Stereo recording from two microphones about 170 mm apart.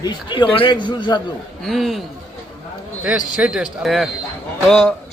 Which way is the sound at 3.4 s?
5° right (ahead or behind).